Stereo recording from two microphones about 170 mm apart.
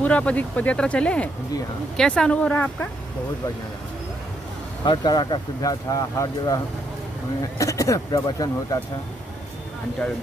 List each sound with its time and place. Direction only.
0.0 s speech: 10° left (ahead or behind)
4.8 s speech: 25° left (ahead or behind)